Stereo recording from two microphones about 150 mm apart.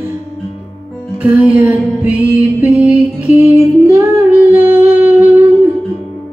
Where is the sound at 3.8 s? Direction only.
15° right (ahead or behind).